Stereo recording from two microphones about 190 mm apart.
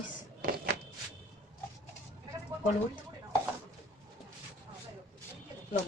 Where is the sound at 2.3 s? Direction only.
20° right (ahead or behind).